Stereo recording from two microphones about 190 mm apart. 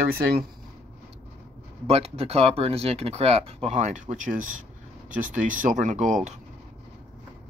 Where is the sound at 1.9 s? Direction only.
30° right (ahead or behind).